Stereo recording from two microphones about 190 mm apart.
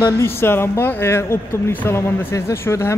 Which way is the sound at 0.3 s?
10° left (ahead or behind).